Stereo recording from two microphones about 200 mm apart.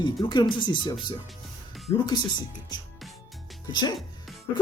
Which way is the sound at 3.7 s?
20° left (ahead or behind).